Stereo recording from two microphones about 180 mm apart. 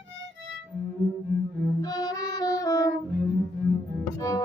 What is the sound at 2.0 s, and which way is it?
Music, 20° left (ahead or behind).